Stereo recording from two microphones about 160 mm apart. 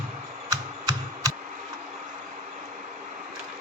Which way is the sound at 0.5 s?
25° right (ahead or behind).